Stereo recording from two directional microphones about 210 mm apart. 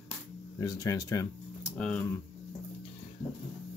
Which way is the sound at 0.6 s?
15° left (ahead or behind).